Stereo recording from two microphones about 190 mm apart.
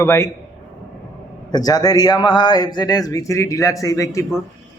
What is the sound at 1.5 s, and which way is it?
A man's voice, 20° left (ahead or behind).